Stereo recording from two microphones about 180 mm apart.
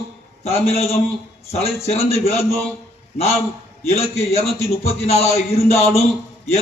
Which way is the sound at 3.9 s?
35° left (ahead or behind).